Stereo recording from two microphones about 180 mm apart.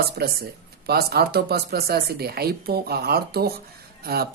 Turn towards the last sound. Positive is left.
turn(degrees=-60)  # may be behind; listen again after turning